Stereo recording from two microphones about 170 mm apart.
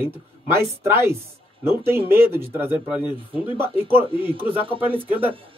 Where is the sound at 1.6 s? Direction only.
15° right (ahead or behind).